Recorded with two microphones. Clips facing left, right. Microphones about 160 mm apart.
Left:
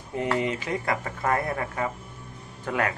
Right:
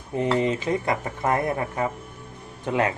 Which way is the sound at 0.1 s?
20° right (ahead or behind).